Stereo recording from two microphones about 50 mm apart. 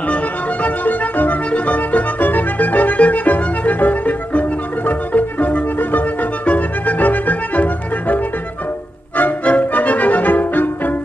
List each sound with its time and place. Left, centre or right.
0.1 s music: left